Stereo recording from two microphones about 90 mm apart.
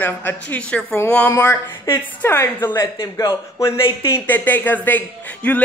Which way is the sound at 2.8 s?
40° left (ahead or behind).